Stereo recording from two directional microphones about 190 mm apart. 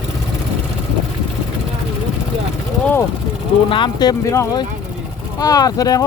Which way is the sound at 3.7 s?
25° left (ahead or behind).